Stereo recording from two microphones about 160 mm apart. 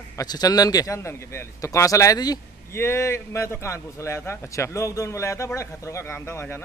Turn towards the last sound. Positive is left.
turn(degrees=15)  # may be behind; listen again after turning